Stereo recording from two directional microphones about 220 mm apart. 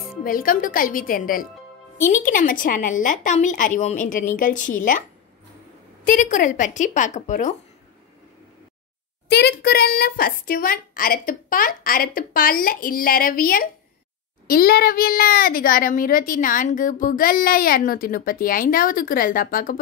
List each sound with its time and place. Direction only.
0.2 s a woman's voice: 40° left (ahead or behind)
6.0 s a woman's voice: 35° left (ahead or behind)
9.3 s a woman's voice: 45° left (ahead or behind)